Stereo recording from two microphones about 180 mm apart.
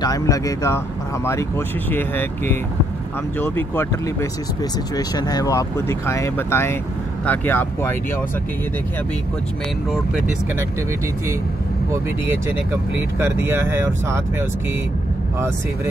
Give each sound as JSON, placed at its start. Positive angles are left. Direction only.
{"t": 0.0, "sound": "speech", "side_deg": 20}
{"t": 1.9, "sound": "speech", "side_deg": 10}
{"t": 13.2, "sound": "speech", "side_deg": -15}